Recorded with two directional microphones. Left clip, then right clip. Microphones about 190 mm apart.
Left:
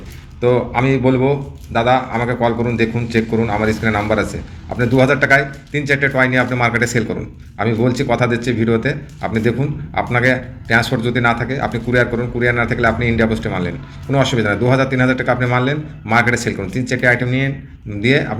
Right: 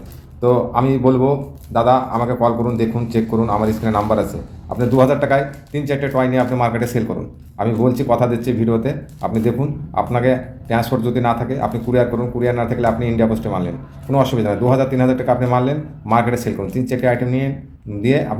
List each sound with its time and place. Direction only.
0.4 s speech: 15° right (ahead or behind)